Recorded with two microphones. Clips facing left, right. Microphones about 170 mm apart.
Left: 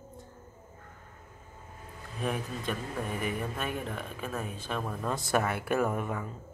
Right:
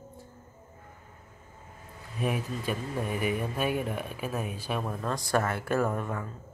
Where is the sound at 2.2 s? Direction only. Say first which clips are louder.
Right 2 dB; 10° right (ahead or behind).